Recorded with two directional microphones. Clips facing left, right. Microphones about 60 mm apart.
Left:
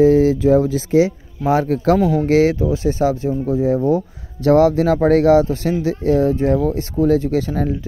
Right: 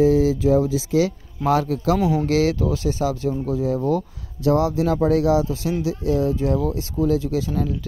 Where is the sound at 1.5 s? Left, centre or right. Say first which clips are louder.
Left 4 dB; left.